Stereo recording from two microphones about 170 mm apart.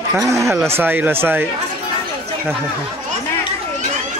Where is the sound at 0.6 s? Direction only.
15° right (ahead or behind).